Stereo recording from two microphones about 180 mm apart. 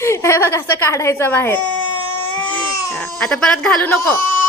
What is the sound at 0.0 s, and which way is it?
Speech, 15° left (ahead or behind).